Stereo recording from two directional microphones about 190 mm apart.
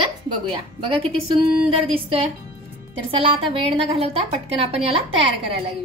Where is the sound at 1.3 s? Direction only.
30° right (ahead or behind).